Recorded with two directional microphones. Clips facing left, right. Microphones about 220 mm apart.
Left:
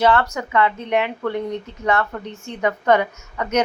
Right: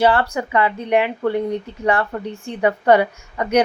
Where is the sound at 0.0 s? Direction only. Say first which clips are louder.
Right 1 dB; 30° right (ahead or behind).